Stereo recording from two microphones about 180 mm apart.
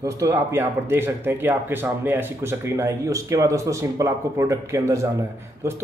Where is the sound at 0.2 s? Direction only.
15° right (ahead or behind).